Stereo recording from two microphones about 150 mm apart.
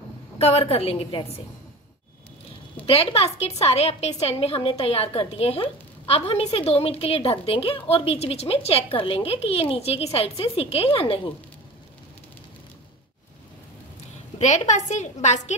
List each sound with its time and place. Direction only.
0.4 s a woman's voice: 45° left (ahead or behind)
2.9 s a woman's voice: 40° left (ahead or behind)
14.4 s a woman's voice: 50° left (ahead or behind)